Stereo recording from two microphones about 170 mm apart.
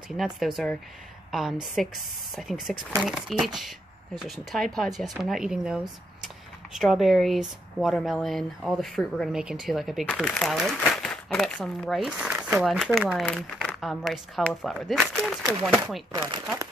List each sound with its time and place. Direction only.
0.2 s speech: centre (ahead or behind)
16.1 s speech: 25° right (ahead or behind)